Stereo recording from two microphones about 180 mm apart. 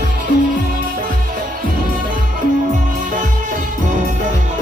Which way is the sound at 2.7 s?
45° right (ahead or behind).